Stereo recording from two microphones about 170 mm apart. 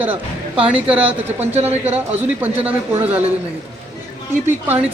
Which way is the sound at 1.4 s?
40° right (ahead or behind).